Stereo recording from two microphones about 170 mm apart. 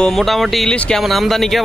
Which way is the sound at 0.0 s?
Centre (ahead or behind).